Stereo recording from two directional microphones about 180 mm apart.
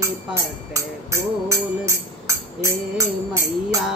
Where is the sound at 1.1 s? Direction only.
15° right (ahead or behind).